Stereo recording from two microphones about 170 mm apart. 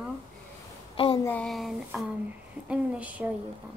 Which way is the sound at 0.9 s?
30° left (ahead or behind).